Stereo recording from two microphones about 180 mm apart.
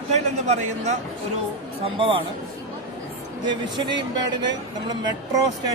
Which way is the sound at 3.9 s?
75° right (ahead or behind).